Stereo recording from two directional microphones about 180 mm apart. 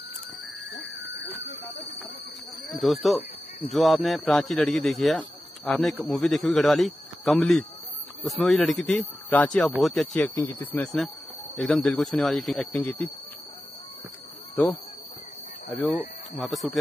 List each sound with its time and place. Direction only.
0.7 s a sound: 85° left
2.7 s a man's voice: centre (ahead or behind)
16.0 s a man's voice: centre (ahead or behind)